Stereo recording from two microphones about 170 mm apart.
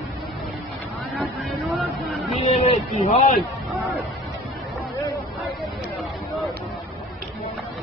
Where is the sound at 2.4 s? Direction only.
40° left (ahead or behind).